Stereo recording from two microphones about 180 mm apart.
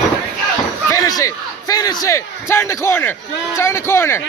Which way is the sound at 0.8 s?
20° left (ahead or behind).